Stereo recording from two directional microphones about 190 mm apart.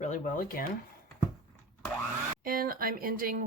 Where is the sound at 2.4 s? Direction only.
50° right (ahead or behind).